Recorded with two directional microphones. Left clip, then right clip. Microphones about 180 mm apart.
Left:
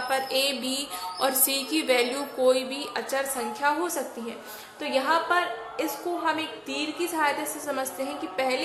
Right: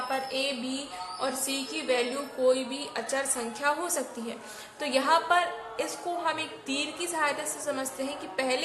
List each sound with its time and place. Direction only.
0.1 s music: 40° left (ahead or behind)
1.2 s a woman's voice: 30° left (ahead or behind)